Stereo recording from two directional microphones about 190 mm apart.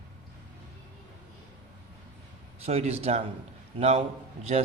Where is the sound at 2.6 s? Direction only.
35° right (ahead or behind).